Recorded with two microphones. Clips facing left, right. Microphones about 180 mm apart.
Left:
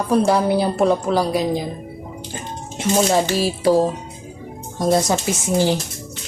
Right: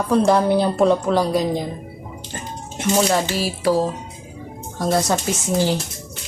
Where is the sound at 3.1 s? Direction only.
20° left (ahead or behind).